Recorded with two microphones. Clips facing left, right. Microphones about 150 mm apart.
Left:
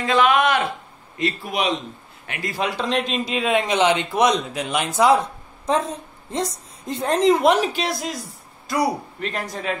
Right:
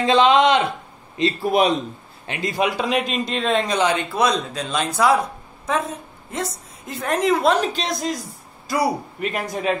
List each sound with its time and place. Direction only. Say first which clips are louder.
0.0 s speech: right 3 dB; 25° right (ahead or behind)
1.4 s a man's voice: right 8 dB; 40° right (ahead or behind)
2.2 s a man's voice: right 4 dB; 25° right (ahead or behind); by 3.5 s 5° left (ahead or behind)
3.5 s speech: left 2 dB; 20° left (ahead or behind)
5.0 s a woman's voice: left 2 dB; 30° left (ahead or behind)
7.4 s a man's voice: left 1 dB; 15° left (ahead or behind); by 9.8 s 15° right (ahead or behind)